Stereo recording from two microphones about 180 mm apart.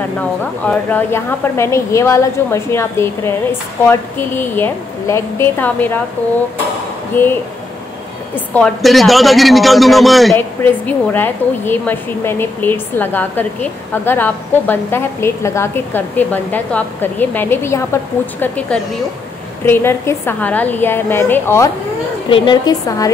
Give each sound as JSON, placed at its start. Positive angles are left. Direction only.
{"t": 0.7, "sound": "a woman's voice", "side_deg": 10}
{"t": 7.1, "sound": "a woman's voice", "side_deg": 10}
{"t": 8.5, "sound": "a man's voice", "side_deg": 0}
{"t": 10.3, "sound": "a woman's voice", "side_deg": 10}